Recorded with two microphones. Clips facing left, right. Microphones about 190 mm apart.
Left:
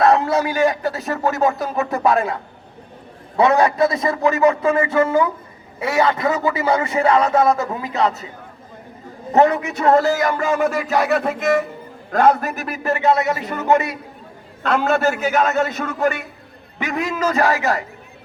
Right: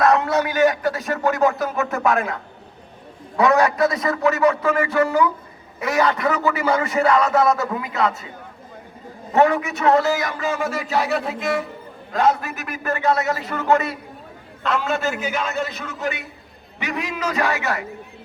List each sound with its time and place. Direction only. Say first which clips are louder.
0.0 s a man's voice: left 2 dB; 30° left (ahead or behind)
3.3 s a man's voice: left 2 dB; 30° left (ahead or behind)
6.8 s a man's voice: left 1 dB; 25° left (ahead or behind)
9.3 s a man's voice: left 2 dB; 35° left (ahead or behind)
9.9 s a man's voice: left 4 dB; 45° left (ahead or behind)
12.5 s a man's voice: left 5 dB; 40° left (ahead or behind)
12.8 s a man's voice: left 3 dB; 25° left (ahead or behind)
14.6 s a man's voice: left 5 dB; 50° left (ahead or behind); by 17.8 s 35° left (ahead or behind)